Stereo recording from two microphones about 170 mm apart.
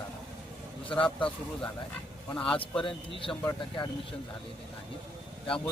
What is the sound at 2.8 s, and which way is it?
Speech, 30° left (ahead or behind).